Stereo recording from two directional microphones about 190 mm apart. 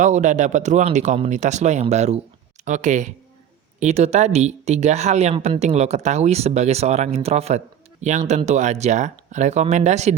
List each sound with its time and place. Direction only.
0.0 s speech: 40° right (ahead or behind)